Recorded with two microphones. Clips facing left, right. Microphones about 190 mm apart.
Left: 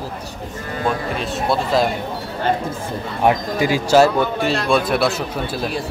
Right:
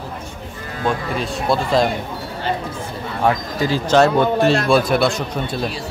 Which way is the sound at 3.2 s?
15° left (ahead or behind).